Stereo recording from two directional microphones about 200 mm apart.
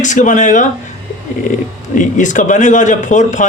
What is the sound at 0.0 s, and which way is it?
Speech, 40° left (ahead or behind).